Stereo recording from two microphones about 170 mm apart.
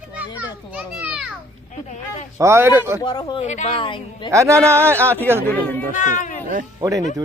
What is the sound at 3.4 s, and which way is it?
Speech, 45° left (ahead or behind).